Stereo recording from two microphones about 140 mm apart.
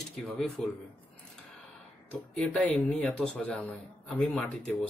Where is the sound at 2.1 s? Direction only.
5° left (ahead or behind).